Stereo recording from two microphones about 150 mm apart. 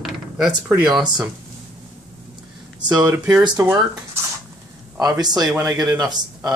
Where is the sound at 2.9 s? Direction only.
25° right (ahead or behind).